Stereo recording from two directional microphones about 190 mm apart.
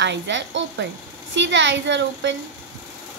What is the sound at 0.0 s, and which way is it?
A woman's voice, 70° right (ahead or behind).